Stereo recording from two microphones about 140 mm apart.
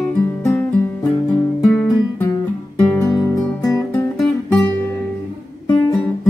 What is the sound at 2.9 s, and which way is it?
Music, 20° left (ahead or behind).